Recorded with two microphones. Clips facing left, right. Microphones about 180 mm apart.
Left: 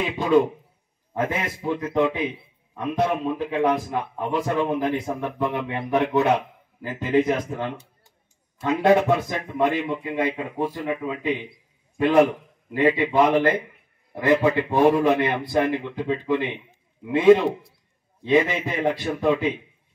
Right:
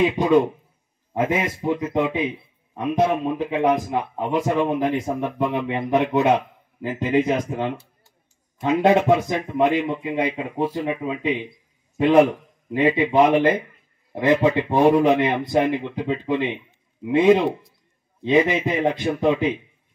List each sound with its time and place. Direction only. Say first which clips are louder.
0.2 s a man's voice: right 1 dB; 15° right (ahead or behind)